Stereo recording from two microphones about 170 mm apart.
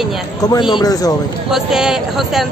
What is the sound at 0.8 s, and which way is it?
Speech, 20° left (ahead or behind).